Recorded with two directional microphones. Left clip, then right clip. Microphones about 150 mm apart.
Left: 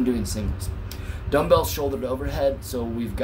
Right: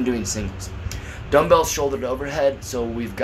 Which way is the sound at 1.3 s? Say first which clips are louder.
Right 4 dB; 20° left (ahead or behind).